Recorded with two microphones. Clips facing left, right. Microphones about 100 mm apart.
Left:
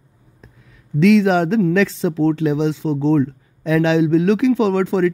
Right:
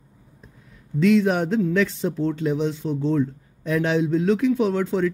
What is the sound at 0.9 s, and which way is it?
A man's voice, 90° left.